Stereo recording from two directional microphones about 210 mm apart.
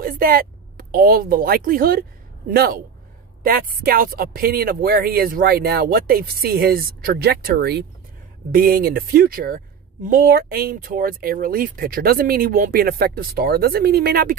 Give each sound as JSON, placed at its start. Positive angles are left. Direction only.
{"t": 0.0, "sound": "a woman's voice", "side_deg": -45}